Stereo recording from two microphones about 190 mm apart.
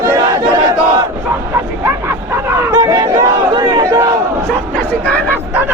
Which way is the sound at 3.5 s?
15° right (ahead or behind).